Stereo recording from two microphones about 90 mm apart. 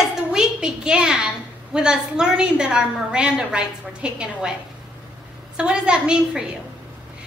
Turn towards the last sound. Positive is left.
turn(degrees=-10)  # may be behind; listen again after turning